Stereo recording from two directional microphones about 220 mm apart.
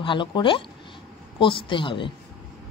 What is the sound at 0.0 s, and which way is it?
Speech, 20° left (ahead or behind).